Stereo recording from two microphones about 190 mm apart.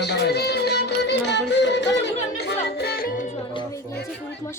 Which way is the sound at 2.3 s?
55° left (ahead or behind).